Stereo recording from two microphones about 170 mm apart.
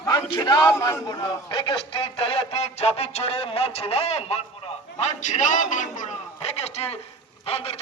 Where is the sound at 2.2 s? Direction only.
35° left (ahead or behind).